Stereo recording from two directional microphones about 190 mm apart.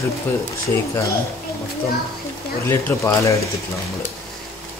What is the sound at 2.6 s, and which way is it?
Speech, 15° left (ahead or behind).